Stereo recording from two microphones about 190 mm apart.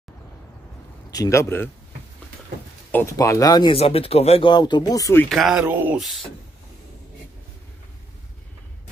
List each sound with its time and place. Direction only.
1.1 s speech: 15° left (ahead or behind)
2.9 s speech: 15° left (ahead or behind)
5.3 s speech: centre (ahead or behind)